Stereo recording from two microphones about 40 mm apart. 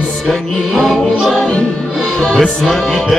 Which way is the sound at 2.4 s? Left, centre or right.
Centre.